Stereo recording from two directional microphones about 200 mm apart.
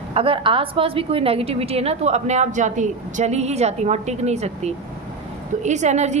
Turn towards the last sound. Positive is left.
turn(degrees=-35)  # may be behind; listen again after turning